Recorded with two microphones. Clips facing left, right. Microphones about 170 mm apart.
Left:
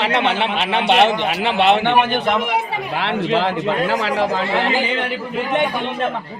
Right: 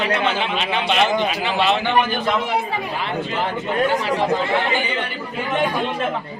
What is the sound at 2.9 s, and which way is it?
A man's voice, 85° left.